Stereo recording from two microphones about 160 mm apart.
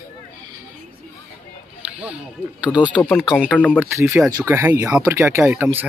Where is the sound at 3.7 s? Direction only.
15° right (ahead or behind).